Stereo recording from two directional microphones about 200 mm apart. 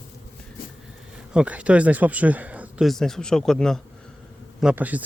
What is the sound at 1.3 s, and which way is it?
Speech, 5° right (ahead or behind).